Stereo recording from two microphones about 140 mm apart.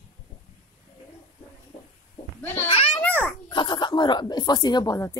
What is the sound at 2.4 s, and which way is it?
Speech, 15° left (ahead or behind).